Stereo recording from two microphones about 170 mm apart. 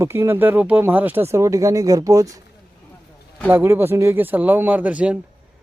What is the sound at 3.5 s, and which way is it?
Speech, 15° right (ahead or behind).